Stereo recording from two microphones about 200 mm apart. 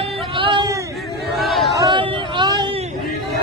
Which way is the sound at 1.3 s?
Centre (ahead or behind).